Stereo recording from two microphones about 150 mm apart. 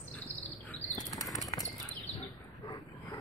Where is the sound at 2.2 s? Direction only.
30° left (ahead or behind).